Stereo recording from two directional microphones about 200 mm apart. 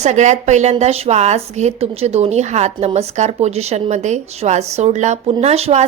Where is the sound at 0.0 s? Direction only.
35° right (ahead or behind).